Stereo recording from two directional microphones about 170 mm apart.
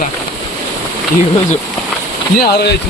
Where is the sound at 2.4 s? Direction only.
70° left (ahead or behind).